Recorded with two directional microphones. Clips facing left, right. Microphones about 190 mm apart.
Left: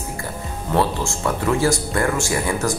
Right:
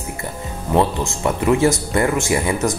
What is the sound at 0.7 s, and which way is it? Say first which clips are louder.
Speech: right 2 dB; 20° right (ahead or behind).